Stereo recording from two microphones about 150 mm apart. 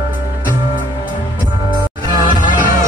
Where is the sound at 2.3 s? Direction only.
60° left (ahead or behind).